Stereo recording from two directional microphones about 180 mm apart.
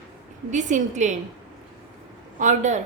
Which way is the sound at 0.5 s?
45° right (ahead or behind).